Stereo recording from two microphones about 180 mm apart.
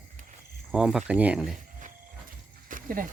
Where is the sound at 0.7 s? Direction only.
5° right (ahead or behind).